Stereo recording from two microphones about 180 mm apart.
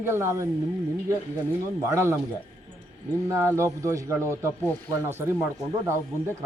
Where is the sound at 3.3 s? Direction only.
15° right (ahead or behind).